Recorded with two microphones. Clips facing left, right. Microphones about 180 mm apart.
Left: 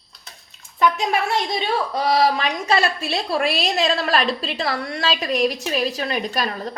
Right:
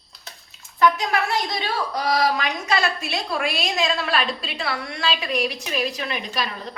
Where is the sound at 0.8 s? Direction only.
25° left (ahead or behind).